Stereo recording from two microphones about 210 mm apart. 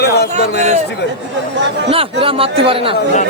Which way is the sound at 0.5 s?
35° right (ahead or behind).